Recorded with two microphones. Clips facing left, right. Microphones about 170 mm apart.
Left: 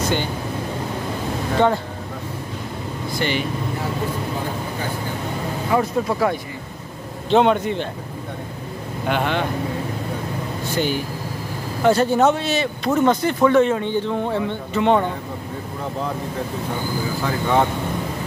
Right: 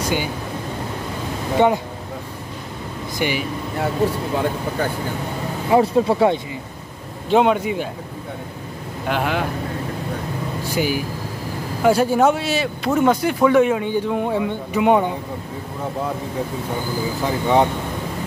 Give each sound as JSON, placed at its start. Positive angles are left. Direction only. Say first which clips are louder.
{"t": 0.0, "sound": "speech", "louder": "even", "side_deg": -10}
{"t": 1.6, "sound": "speech", "louder": "right 2 dB", "side_deg": -15}
{"t": 3.2, "sound": "speech", "louder": "right 1 dB", "side_deg": -10}
{"t": 5.7, "sound": "speech", "louder": "right 5 dB", "side_deg": -25}
{"t": 7.2, "sound": "speech", "louder": "even", "side_deg": -5}
{"t": 9.0, "sound": "speech", "louder": "even", "side_deg": 0}
{"t": 10.8, "sound": "speech", "louder": "right 1 dB", "side_deg": -5}
{"t": 17.2, "sound": "speech", "louder": "right 2 dB", "side_deg": -15}